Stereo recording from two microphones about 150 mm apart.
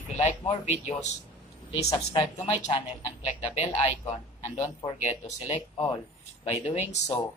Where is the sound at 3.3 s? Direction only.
50° left (ahead or behind).